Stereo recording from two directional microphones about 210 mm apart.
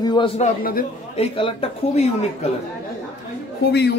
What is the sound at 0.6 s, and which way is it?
Speech, 45° left (ahead or behind).